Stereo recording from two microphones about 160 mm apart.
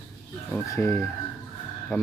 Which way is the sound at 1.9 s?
Centre (ahead or behind).